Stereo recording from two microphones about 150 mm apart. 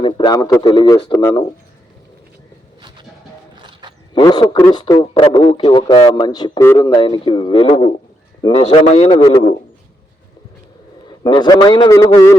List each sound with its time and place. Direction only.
0.0 s a man's voice: 30° left (ahead or behind)
3.6 s wild animals: 30° right (ahead or behind)
4.1 s a man's voice: 30° left (ahead or behind)
5.6 s a man's voice: 30° left (ahead or behind)
9.1 s speech: 30° left (ahead or behind)
11.1 s a man's voice: 30° left (ahead or behind)